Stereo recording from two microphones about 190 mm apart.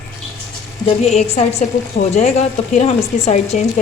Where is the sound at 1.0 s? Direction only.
35° left (ahead or behind).